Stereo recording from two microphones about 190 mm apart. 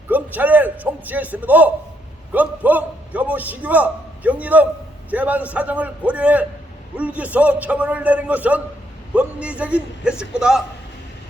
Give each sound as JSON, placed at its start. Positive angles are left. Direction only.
{"t": 0.1, "sound": "a man's voice", "side_deg": -10}